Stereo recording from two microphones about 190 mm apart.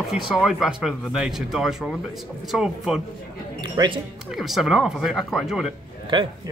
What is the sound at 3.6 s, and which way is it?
Speech, 25° right (ahead or behind).